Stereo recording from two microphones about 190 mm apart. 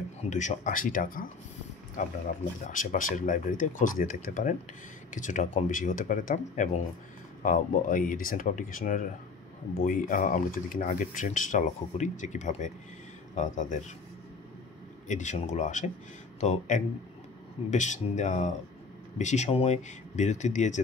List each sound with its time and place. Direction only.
0.3 s speech: 40° left (ahead or behind)
15.0 s speech: 40° left (ahead or behind)